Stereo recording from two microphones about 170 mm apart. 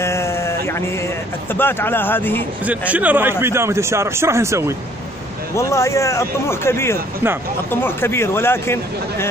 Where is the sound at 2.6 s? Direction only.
10° right (ahead or behind).